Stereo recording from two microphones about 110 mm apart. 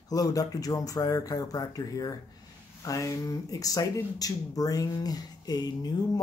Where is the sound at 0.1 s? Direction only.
35° left (ahead or behind).